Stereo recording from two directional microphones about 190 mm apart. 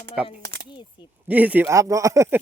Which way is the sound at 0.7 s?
25° left (ahead or behind).